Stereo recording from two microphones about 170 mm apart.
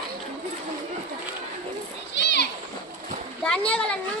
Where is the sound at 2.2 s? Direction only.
90° left.